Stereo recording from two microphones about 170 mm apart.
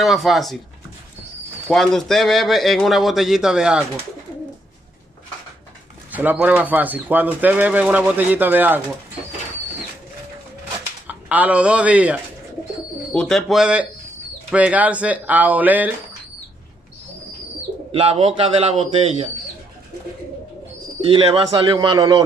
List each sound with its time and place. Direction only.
0.0 s speech: centre (ahead or behind)
1.7 s speech: centre (ahead or behind)
6.1 s speech: 10° right (ahead or behind)
11.1 s speech: 10° right (ahead or behind)
13.1 s speech: 5° left (ahead or behind)
17.9 s a man's voice: 35° right (ahead or behind)
21.5 s a man's voice: 25° right (ahead or behind)